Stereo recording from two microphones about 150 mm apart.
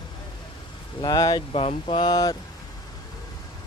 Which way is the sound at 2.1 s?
25° left (ahead or behind).